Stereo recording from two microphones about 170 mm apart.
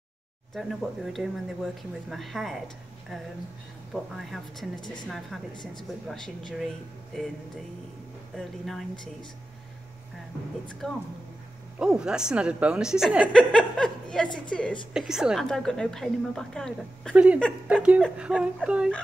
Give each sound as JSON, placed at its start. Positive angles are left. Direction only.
{"t": 0.6, "sound": "a woman's voice", "side_deg": 0}
{"t": 3.9, "sound": "a woman's voice", "side_deg": 0}
{"t": 5.5, "sound": "speech", "side_deg": 25}
{"t": 6.0, "sound": "a woman's voice", "side_deg": 5}
{"t": 8.4, "sound": "a woman's voice", "side_deg": 0}
{"t": 10.7, "sound": "a woman's voice", "side_deg": 5}
{"t": 17.1, "sound": "speech", "side_deg": -10}